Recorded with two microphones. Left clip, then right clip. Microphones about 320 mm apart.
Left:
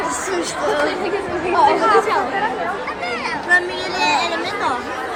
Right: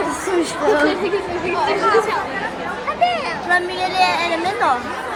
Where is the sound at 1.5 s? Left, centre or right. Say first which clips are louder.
Left 3 dB; left.